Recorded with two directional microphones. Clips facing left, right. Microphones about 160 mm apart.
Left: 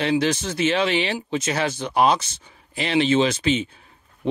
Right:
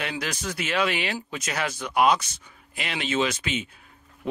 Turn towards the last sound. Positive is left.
turn(degrees=30)  # may be behind; listen again after turning